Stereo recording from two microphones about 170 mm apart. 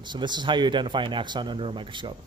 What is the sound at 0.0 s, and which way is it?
A man's voice, 25° right (ahead or behind).